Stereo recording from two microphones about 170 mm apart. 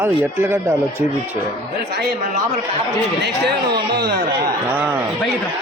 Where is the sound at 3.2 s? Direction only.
80° right.